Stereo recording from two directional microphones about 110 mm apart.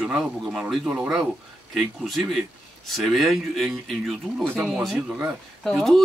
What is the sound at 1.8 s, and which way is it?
Speech, centre (ahead or behind).